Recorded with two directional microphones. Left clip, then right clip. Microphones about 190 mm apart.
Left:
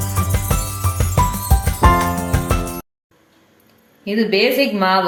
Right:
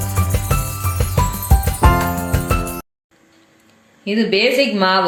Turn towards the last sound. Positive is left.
turn(degrees=-15)  # may be behind; listen again after turning